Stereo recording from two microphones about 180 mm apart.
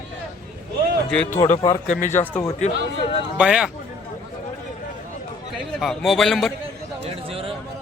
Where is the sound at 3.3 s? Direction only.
5° right (ahead or behind).